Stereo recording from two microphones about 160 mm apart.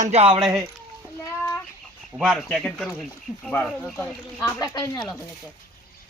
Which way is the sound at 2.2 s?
Centre (ahead or behind).